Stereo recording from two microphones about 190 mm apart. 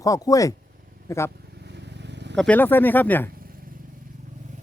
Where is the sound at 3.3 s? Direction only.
50° right (ahead or behind).